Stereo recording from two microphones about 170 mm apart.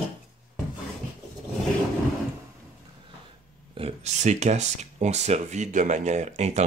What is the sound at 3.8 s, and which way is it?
Speech, 40° right (ahead or behind).